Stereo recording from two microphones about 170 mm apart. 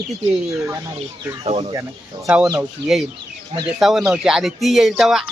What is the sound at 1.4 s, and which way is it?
Speech, 35° right (ahead or behind).